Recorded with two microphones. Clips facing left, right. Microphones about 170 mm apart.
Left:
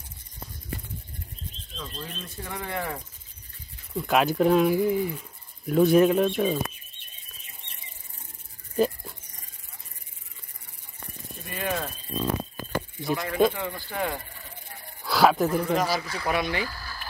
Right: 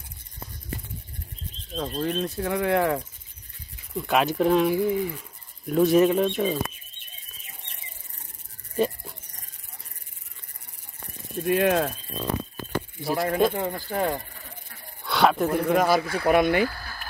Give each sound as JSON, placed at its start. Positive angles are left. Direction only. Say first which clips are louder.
{"t": 1.8, "sound": "speech", "louder": "right 12 dB", "side_deg": -60}
{"t": 3.9, "sound": "speech", "louder": "even", "side_deg": 0}
{"t": 8.7, "sound": "dog", "louder": "left 1 dB", "side_deg": 0}
{"t": 11.4, "sound": "speech", "louder": "right 9 dB", "side_deg": -75}
{"t": 13.0, "sound": "speech", "louder": "right 1 dB", "side_deg": -40}
{"t": 15.0, "sound": "speech", "louder": "left 1 dB", "side_deg": 0}
{"t": 15.7, "sound": "speech", "louder": "right 5 dB", "side_deg": -55}